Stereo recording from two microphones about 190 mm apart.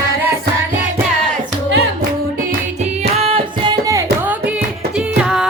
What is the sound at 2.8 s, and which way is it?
Music, 30° right (ahead or behind).